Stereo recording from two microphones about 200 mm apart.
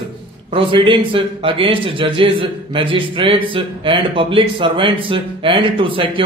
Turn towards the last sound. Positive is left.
turn(degrees=-25)  # may be behind; listen again after turning